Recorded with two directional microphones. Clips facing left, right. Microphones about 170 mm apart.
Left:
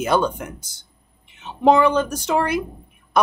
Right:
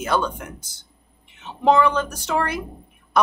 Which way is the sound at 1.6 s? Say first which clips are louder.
Left 2 dB; 15° left (ahead or behind).